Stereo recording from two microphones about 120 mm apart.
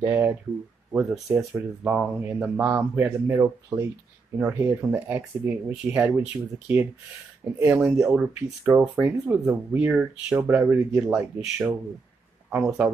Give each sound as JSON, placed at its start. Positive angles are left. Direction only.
{"t": 0.0, "sound": "speech", "side_deg": -15}
{"t": 7.4, "sound": "speech", "side_deg": -15}
{"t": 8.0, "sound": "speech", "side_deg": 0}
{"t": 8.6, "sound": "speech", "side_deg": -15}